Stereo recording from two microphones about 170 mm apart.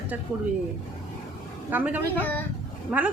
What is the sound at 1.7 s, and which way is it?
A man's voice, 10° right (ahead or behind).